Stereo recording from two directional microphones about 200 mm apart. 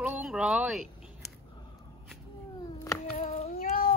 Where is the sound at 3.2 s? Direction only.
35° left (ahead or behind).